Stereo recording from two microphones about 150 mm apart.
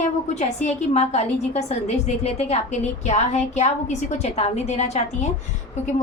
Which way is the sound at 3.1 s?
50° left (ahead or behind).